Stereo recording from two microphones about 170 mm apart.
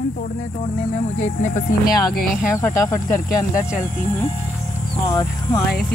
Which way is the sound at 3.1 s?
50° left (ahead or behind).